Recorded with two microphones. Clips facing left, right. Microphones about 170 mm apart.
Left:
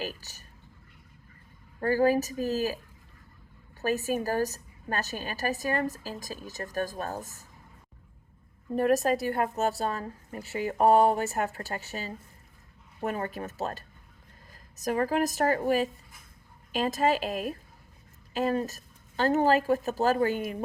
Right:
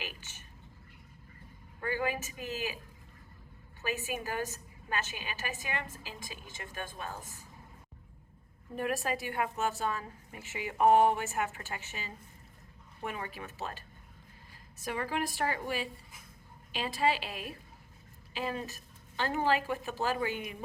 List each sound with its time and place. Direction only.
0.0 s speech: 40° left (ahead or behind)
1.8 s a woman's voice: 40° left (ahead or behind)
3.8 s a woman's voice: 40° left (ahead or behind)
8.7 s a woman's voice: 40° left (ahead or behind)